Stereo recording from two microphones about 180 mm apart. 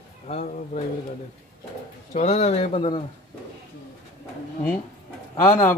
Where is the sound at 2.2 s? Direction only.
40° left (ahead or behind).